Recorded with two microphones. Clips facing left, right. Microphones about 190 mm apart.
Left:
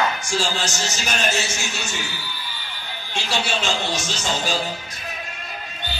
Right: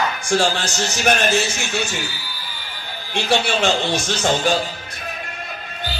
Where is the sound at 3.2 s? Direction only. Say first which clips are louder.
Right 6 dB; 55° right (ahead or behind).